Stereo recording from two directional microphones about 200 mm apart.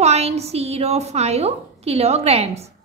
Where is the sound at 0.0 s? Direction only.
30° right (ahead or behind).